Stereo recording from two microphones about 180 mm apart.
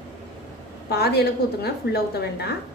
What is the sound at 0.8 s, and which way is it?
Speech, 60° left (ahead or behind).